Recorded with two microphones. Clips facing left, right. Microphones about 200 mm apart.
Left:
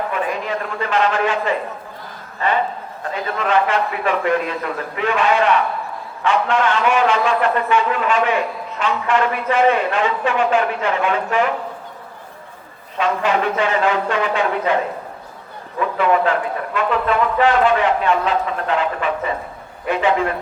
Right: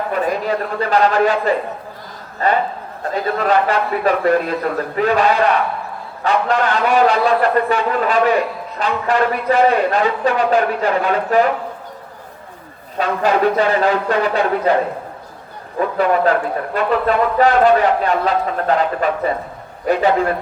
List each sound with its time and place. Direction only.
0.1 s a man's voice: 40° right (ahead or behind)
13.0 s speech: 40° right (ahead or behind)
15.8 s speech: 40° right (ahead or behind)